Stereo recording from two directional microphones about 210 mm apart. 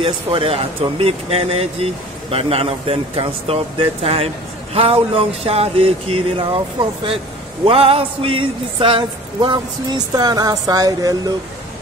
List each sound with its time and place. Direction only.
0.0 s speech: 25° right (ahead or behind)
7.6 s speech: 25° right (ahead or behind)